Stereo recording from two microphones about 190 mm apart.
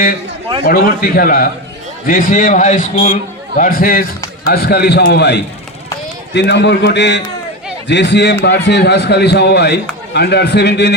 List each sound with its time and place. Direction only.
0.6 s a man's voice: 50° left (ahead or behind)